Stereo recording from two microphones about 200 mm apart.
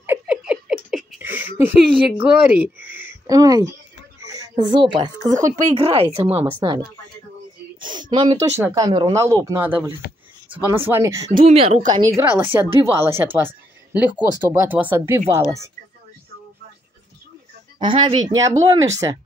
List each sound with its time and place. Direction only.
0.0 s a sound: 10° right (ahead or behind)
2.2 s a woman's voice: 5° right (ahead or behind); by 6.4 s 30° right (ahead or behind)
7.8 s a sound: 25° right (ahead or behind)
8.5 s speech: 15° right (ahead or behind)
11.3 s a woman's voice: 30° right (ahead or behind); by 15.4 s 15° right (ahead or behind)
17.7 s speech: 25° right (ahead or behind)